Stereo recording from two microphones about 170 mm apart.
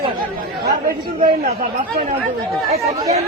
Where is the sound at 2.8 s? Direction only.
20° right (ahead or behind).